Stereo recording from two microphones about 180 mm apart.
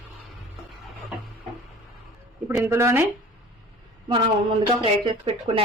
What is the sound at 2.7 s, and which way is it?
Speech, 15° right (ahead or behind).